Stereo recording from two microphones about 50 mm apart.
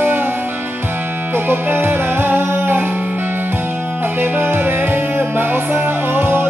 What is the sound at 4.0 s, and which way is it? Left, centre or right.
Music, right.